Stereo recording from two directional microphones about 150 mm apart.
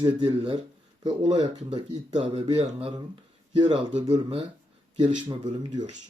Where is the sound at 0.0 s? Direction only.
35° right (ahead or behind).